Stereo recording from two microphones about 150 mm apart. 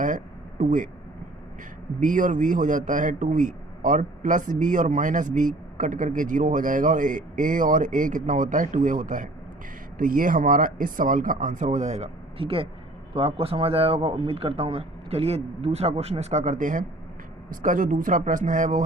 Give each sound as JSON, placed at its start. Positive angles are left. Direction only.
{"t": 0.6, "sound": "a man's voice", "side_deg": -60}
{"t": 2.0, "sound": "a man's voice", "side_deg": -60}